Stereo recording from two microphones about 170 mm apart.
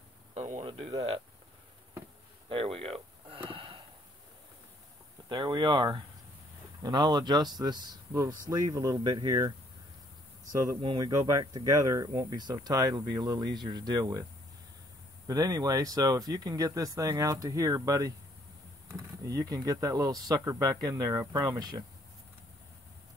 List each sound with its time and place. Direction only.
0.3 s a sound: 45° right (ahead or behind)
2.5 s a sound: 35° right (ahead or behind)
5.3 s speech: 30° right (ahead or behind)
10.5 s speech: 20° right (ahead or behind)
15.2 s speech: 20° right (ahead or behind)
19.2 s speech: 20° right (ahead or behind)